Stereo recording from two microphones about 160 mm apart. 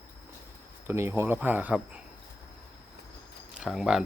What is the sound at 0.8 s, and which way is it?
Speech, 15° right (ahead or behind).